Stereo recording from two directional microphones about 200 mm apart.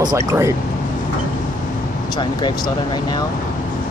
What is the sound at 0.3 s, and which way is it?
Speech, 15° right (ahead or behind).